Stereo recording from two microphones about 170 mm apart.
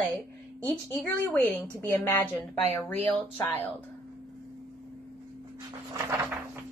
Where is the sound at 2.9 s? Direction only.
40° right (ahead or behind).